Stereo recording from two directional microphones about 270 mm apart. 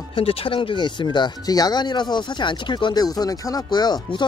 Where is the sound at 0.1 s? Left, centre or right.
Left.